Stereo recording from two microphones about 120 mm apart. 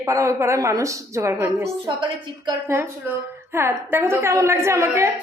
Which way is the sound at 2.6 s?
20° right (ahead or behind).